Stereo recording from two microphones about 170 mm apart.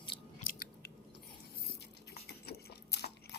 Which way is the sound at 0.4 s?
60° left (ahead or behind).